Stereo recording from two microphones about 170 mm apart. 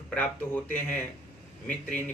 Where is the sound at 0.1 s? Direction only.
10° left (ahead or behind).